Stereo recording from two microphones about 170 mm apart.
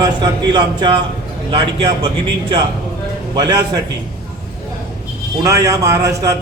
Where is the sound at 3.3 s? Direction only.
25° right (ahead or behind).